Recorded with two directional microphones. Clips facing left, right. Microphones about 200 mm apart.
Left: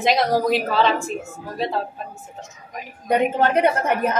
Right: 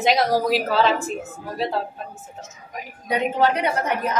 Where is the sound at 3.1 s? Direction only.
55° left (ahead or behind).